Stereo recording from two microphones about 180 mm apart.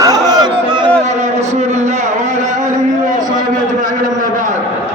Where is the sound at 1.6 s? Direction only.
40° right (ahead or behind).